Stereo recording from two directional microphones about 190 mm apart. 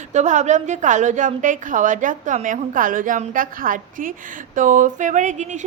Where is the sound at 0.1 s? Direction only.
40° right (ahead or behind).